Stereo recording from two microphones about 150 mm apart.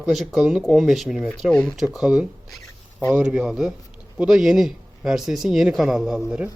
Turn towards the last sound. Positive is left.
turn(degrees=-5)  # may be behind; listen again after turning